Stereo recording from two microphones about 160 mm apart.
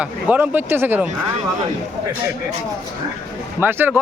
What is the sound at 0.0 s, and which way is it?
A man's voice, 10° right (ahead or behind).